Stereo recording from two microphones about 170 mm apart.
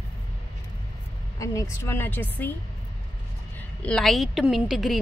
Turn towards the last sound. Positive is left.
turn(degrees=0)  # may be behind; listen again after turning